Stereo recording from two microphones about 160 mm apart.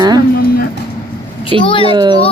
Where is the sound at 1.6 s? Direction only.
30° left (ahead or behind).